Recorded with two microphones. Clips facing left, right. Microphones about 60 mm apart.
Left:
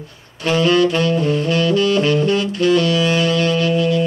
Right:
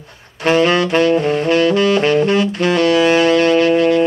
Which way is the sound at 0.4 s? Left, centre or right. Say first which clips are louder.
Right 1 dB; right.